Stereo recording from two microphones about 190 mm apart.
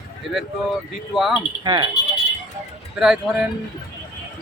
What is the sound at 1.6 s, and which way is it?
Speech, 25° right (ahead or behind).